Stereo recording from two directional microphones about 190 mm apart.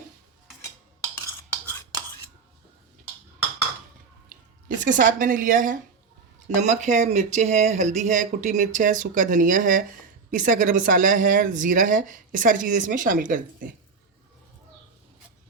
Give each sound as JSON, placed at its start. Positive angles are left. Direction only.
{"t": 4.8, "sound": "speech", "side_deg": -45}